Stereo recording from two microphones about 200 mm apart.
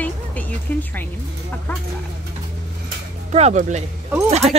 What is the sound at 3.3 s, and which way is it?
Speech, 35° right (ahead or behind).